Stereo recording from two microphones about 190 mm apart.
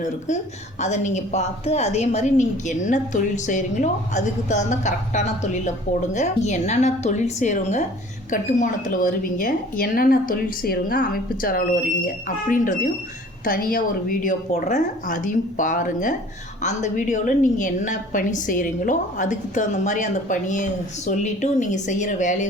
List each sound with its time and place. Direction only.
0.8 s a woman's voice: 40° left (ahead or behind)